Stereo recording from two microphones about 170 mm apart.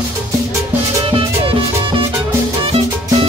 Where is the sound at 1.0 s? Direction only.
30° right (ahead or behind).